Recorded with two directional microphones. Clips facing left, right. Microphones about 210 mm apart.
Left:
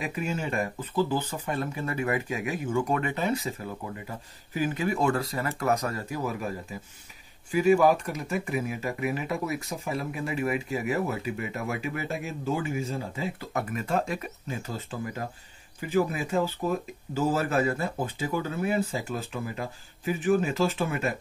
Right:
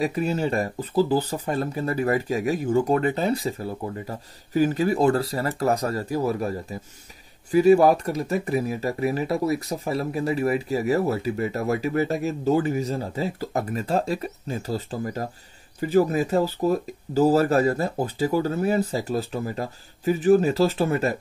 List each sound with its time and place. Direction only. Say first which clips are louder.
0.0 s speech: right 7 dB; 35° right (ahead or behind)
7.5 s speech: right 5 dB; 35° right (ahead or behind)